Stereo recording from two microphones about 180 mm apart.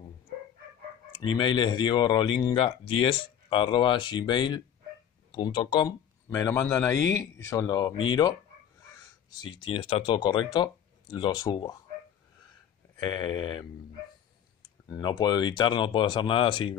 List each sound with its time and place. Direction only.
1.2 s speech: 25° left (ahead or behind)
12.9 s speech: 25° left (ahead or behind)